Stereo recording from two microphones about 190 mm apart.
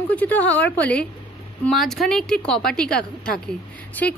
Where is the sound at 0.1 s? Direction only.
10° left (ahead or behind).